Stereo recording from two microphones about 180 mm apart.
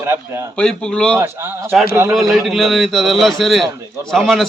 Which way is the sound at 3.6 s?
20° right (ahead or behind).